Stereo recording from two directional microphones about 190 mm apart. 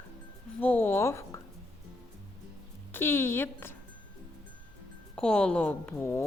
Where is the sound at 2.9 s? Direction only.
10° left (ahead or behind).